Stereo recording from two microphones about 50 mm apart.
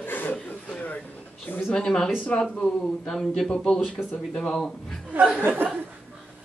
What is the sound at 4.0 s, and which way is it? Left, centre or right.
Speech, left.